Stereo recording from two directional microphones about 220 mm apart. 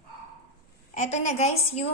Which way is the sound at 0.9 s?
30° left (ahead or behind).